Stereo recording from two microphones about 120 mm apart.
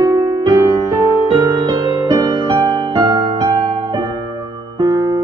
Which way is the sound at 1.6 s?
35° right (ahead or behind).